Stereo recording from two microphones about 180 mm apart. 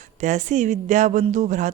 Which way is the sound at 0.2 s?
40° right (ahead or behind).